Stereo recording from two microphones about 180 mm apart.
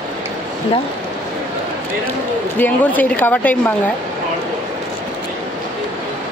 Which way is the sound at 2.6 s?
10° left (ahead or behind).